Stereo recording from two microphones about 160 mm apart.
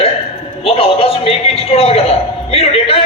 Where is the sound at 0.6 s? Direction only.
35° left (ahead or behind).